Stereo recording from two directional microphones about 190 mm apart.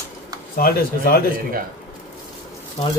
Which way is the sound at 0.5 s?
50° left (ahead or behind).